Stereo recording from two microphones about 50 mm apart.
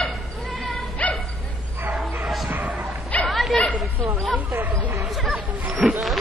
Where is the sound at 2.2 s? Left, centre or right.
Centre.